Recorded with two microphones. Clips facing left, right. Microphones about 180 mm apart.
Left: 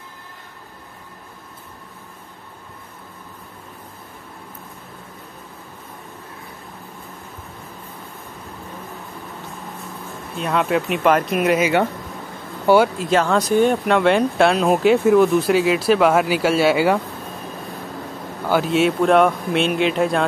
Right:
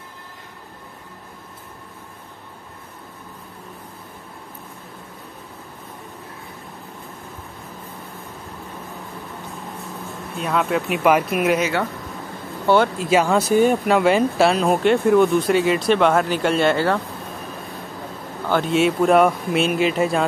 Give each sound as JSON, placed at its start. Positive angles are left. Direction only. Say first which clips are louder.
{"t": 10.4, "sound": "speech", "louder": "left 1 dB", "side_deg": 0}
{"t": 12.6, "sound": "speech", "louder": "left 2 dB", "side_deg": 10}
{"t": 18.5, "sound": "speech", "louder": "left 1 dB", "side_deg": 0}